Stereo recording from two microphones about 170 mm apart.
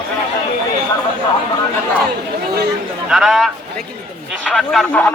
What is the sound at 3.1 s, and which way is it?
A man's voice, centre (ahead or behind).